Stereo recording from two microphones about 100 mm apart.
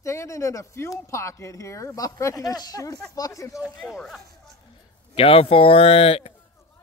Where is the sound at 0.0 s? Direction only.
30° left (ahead or behind).